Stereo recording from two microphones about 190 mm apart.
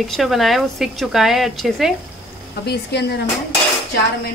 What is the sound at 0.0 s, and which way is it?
A woman's voice, centre (ahead or behind).